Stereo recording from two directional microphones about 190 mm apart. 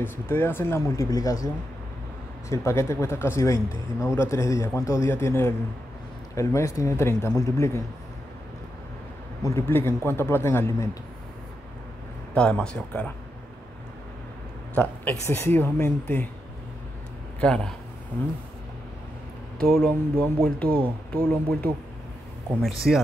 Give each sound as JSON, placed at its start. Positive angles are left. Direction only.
{"t": 0.0, "sound": "speech", "side_deg": 10}
{"t": 2.5, "sound": "speech", "side_deg": 15}
{"t": 9.4, "sound": "speech", "side_deg": 10}
{"t": 12.4, "sound": "speech", "side_deg": 5}
{"t": 14.8, "sound": "speech", "side_deg": 10}
{"t": 17.4, "sound": "speech", "side_deg": 5}
{"t": 19.6, "sound": "speech", "side_deg": 5}